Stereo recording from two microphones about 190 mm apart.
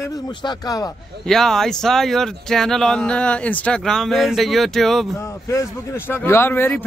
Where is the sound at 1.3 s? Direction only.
Centre (ahead or behind).